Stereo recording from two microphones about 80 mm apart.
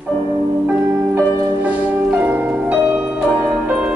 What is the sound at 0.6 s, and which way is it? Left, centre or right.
Music, centre.